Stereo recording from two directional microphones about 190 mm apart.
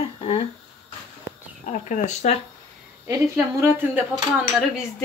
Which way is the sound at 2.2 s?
35° left (ahead or behind).